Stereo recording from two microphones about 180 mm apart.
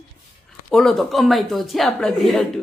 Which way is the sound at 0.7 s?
Centre (ahead or behind).